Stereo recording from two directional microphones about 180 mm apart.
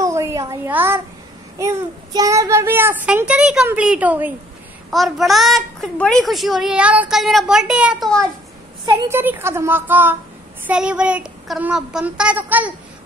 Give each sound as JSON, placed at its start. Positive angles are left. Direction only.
{"t": 0.0, "sound": "a sound", "side_deg": -15}
{"t": 1.6, "sound": "a child's voice", "side_deg": -15}
{"t": 8.8, "sound": "a child's voice", "side_deg": -10}